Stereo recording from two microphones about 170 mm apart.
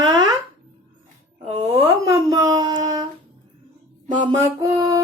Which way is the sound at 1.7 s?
20° right (ahead or behind).